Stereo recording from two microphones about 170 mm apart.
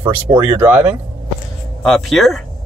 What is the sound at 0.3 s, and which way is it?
Speech, 30° right (ahead or behind).